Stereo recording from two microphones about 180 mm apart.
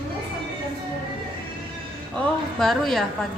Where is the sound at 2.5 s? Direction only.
Centre (ahead or behind).